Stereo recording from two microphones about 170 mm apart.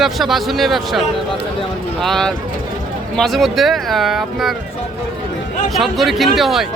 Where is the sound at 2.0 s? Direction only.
Centre (ahead or behind).